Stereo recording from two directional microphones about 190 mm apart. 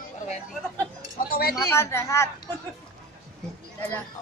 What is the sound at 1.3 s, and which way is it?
Speech, 50° left (ahead or behind).